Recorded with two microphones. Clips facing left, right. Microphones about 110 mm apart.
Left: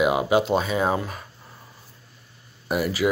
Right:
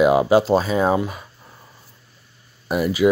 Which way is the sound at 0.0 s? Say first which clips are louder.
Right 5 dB; 35° right (ahead or behind).